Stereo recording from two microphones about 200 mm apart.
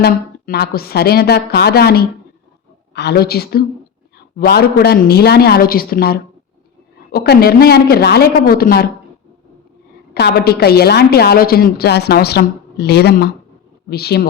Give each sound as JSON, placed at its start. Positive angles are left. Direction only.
{"t": 0.0, "sound": "a woman's voice", "side_deg": 55}
{"t": 10.2, "sound": "a woman's voice", "side_deg": 50}